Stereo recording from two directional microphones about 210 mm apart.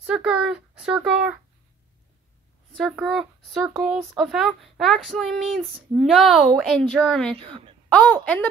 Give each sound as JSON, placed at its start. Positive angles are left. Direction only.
{"t": 0.0, "sound": "speech", "side_deg": -5}
{"t": 2.7, "sound": "speech", "side_deg": 0}
{"t": 7.3, "sound": "a woman's voice", "side_deg": -25}
{"t": 7.9, "sound": "a woman's voice", "side_deg": 5}